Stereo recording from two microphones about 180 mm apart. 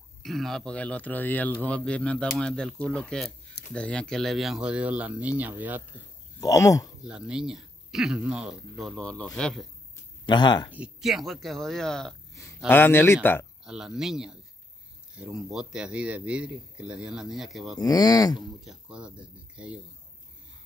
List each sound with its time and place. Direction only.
0.2 s speech: centre (ahead or behind)
6.4 s speech: 20° left (ahead or behind)
7.1 s speech: 5° right (ahead or behind)
10.2 s speech: 25° left (ahead or behind)
10.7 s speech: 5° right (ahead or behind); by 13.5 s 10° left (ahead or behind)
13.7 s speech: 5° right (ahead or behind)
17.7 s speech: 20° left (ahead or behind)
18.6 s speech: 5° right (ahead or behind)